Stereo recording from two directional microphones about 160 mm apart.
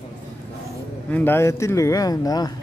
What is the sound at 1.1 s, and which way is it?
Speech, 10° left (ahead or behind).